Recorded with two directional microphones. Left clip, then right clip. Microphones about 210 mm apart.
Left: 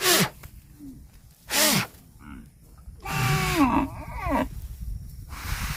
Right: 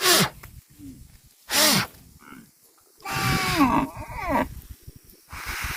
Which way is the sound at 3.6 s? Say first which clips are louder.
Right 2 dB; 45° right (ahead or behind).